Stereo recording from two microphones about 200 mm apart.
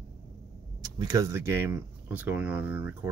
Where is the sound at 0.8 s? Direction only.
15° right (ahead or behind).